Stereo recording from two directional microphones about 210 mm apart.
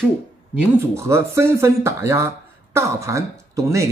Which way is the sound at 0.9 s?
15° right (ahead or behind).